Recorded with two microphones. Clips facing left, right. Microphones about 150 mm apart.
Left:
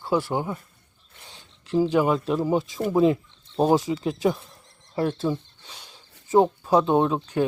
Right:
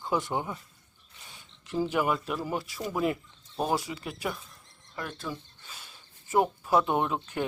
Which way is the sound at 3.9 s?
30° left (ahead or behind).